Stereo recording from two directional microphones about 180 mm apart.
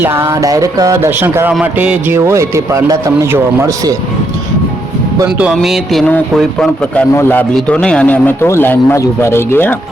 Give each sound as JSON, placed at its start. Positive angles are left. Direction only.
{"t": 0.0, "sound": "a man's voice", "side_deg": -15}
{"t": 5.5, "sound": "a man's voice", "side_deg": 0}